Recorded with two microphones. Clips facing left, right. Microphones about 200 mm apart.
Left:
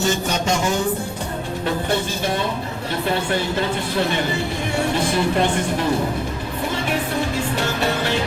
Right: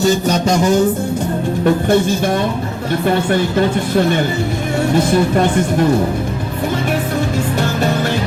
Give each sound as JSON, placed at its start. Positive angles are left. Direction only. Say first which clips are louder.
{"t": 0.0, "sound": "a sound", "louder": "right 7 dB", "side_deg": -40}
{"t": 1.6, "sound": "speech", "louder": "right 9 dB", "side_deg": -50}
{"t": 4.9, "sound": "speech", "louder": "right 7 dB", "side_deg": -45}